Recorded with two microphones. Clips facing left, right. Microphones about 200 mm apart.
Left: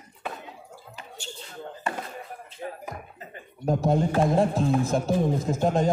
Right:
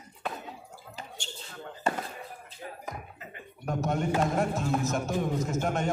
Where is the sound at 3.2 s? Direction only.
35° left (ahead or behind).